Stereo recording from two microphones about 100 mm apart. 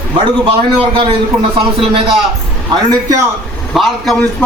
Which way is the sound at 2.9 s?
35° right (ahead or behind).